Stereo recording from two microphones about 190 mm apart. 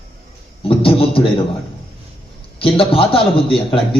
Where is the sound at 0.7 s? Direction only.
30° left (ahead or behind).